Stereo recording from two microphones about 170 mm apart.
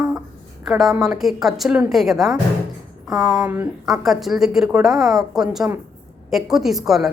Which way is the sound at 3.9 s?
Centre (ahead or behind).